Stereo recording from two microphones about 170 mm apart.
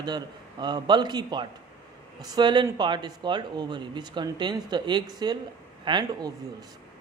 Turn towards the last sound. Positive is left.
turn(degrees=-25)  # may be behind; listen again after turning